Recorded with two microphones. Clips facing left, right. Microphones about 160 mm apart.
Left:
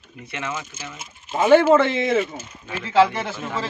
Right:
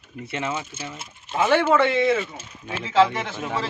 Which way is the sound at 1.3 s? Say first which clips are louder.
Left 1 dB; centre (ahead or behind).